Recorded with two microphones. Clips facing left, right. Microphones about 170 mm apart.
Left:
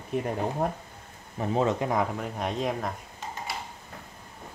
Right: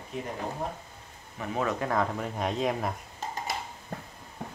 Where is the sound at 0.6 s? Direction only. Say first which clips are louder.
Left 7 dB; 60° left (ahead or behind).